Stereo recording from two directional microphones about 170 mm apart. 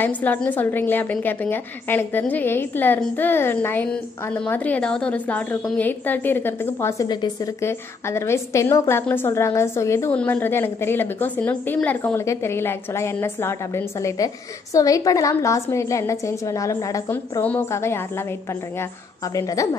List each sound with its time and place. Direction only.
0.0 s a woman's voice: 10° left (ahead or behind)
19.3 s a woman's voice: 20° left (ahead or behind)